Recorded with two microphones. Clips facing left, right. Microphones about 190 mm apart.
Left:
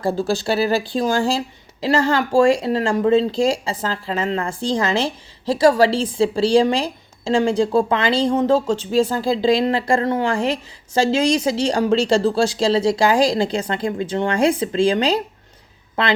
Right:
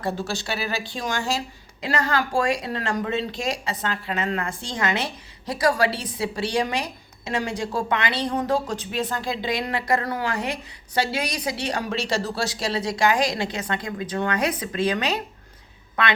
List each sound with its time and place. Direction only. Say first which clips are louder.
0.2 s speech: left 9 dB; 35° left (ahead or behind)